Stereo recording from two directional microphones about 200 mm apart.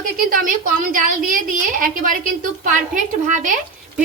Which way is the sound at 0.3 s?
45° right (ahead or behind).